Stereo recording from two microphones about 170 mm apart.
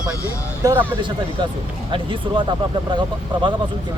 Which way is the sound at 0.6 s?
15° right (ahead or behind).